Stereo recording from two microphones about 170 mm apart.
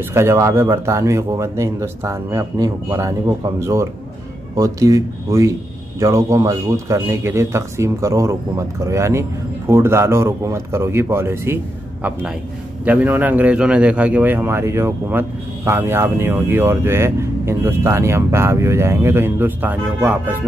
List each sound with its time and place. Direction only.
0.0 s a man's voice: 15° right (ahead or behind)